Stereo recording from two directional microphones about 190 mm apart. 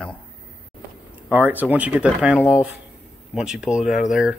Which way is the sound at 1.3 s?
10° right (ahead or behind).